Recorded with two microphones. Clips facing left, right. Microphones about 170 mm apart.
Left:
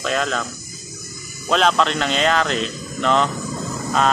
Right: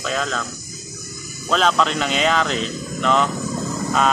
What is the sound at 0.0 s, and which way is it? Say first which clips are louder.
Speech: left 2 dB; centre (ahead or behind).